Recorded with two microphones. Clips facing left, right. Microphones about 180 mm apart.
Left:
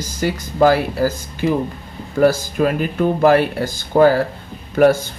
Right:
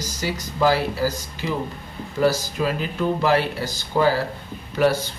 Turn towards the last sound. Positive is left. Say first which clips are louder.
# left 6 dB
turn(degrees=50)  # may be behind; listen again after turning